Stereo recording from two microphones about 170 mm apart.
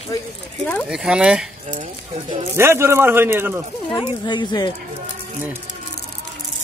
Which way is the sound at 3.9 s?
30° left (ahead or behind).